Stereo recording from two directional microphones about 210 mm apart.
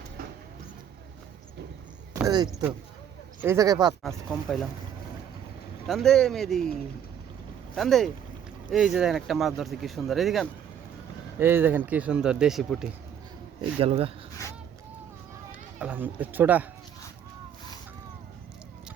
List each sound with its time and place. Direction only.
0.2 s vehicle: 45° right (ahead or behind)
2.1 s speech: 15° right (ahead or behind)
4.0 s speech: centre (ahead or behind)
5.9 s speech: centre (ahead or behind)
7.8 s speech: centre (ahead or behind)
13.6 s speech: 25° right (ahead or behind)
15.8 s speech: 10° right (ahead or behind)